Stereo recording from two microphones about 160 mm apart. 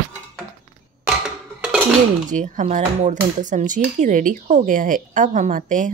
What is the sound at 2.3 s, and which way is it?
A woman's voice, 50° right (ahead or behind).